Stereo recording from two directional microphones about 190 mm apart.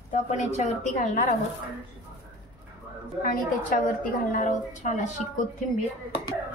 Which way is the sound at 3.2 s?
45° left (ahead or behind).